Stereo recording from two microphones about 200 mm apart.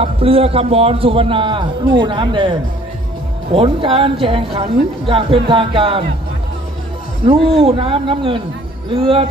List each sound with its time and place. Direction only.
0.0 s a woman's voice: 30° right (ahead or behind)
3.5 s a woman's voice: 25° right (ahead or behind)
7.2 s a woman's voice: 30° right (ahead or behind)